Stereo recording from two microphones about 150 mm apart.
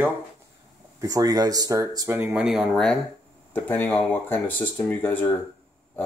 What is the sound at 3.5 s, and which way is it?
Speech, 10° left (ahead or behind).